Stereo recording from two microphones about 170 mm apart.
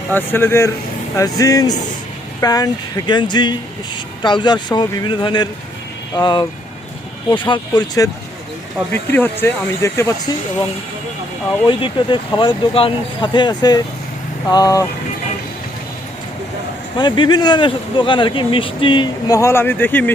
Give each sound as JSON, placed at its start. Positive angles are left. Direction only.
{"t": 0.1, "sound": "speech", "side_deg": 10}
{"t": 8.9, "sound": "speech", "side_deg": 10}
{"t": 11.6, "sound": "speech", "side_deg": 30}
{"t": 17.0, "sound": "speech", "side_deg": 25}